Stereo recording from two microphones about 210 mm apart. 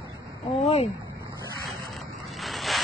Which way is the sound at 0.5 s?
30° left (ahead or behind).